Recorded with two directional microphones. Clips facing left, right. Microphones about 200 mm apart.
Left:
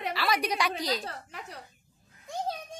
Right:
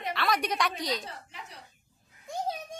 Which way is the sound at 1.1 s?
65° left (ahead or behind).